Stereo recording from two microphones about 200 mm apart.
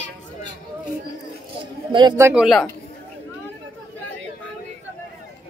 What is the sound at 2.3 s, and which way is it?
Speech, centre (ahead or behind).